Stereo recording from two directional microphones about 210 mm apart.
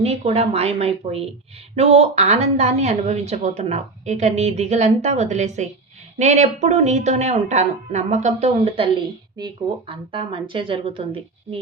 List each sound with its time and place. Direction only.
0.0 s a woman's voice: 30° right (ahead or behind)